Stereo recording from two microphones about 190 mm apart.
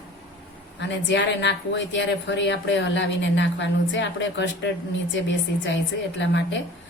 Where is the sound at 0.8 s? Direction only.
70° left (ahead or behind).